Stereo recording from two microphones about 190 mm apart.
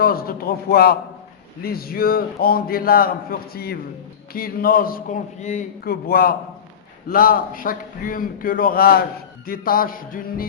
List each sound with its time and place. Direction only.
0.0 s a man's voice: 50° left (ahead or behind)